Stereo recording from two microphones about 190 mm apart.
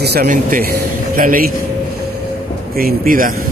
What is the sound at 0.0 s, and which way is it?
A man's voice, 55° right (ahead or behind).